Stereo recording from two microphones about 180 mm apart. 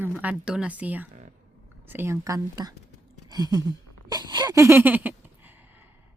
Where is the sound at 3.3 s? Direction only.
20° right (ahead or behind).